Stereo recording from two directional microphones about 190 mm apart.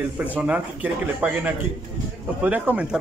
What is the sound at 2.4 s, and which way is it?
Speech, 10° right (ahead or behind).